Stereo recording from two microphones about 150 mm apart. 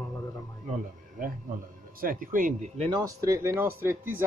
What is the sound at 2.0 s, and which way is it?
Speech, 70° right (ahead or behind).